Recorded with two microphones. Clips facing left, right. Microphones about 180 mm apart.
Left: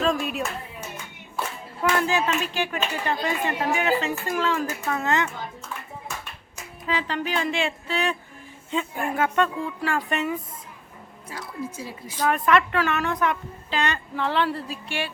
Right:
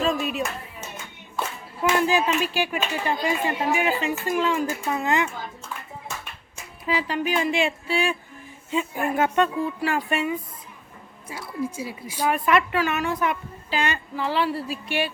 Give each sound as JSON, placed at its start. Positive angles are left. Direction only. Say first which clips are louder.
{"t": 0.0, "sound": "speech", "louder": "even", "side_deg": 0}
{"t": 1.8, "sound": "speech", "louder": "right 2 dB", "side_deg": -15}
{"t": 6.8, "sound": "speech", "louder": "right 2 dB", "side_deg": -10}
{"t": 9.1, "sound": "a sound", "louder": "right 1 dB", "side_deg": -20}
{"t": 10.1, "sound": "speech", "louder": "right 1 dB", "side_deg": -5}